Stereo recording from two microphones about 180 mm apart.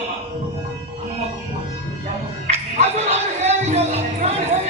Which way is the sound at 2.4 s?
40° right (ahead or behind).